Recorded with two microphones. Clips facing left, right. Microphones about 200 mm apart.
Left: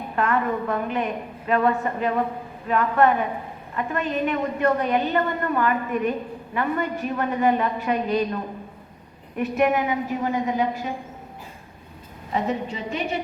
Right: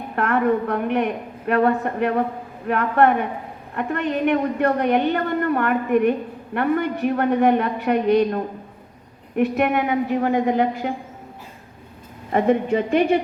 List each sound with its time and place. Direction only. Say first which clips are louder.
0.2 s a woman's voice: right 4 dB; 60° right (ahead or behind)
9.4 s a woman's voice: right 2 dB; 60° right (ahead or behind)
12.3 s a woman's voice: right 8 dB; 55° right (ahead or behind)